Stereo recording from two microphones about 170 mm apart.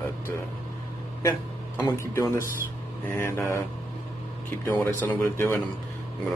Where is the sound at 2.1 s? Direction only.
15° left (ahead or behind).